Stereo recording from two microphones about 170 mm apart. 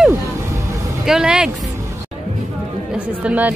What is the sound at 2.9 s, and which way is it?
Speech, 10° right (ahead or behind).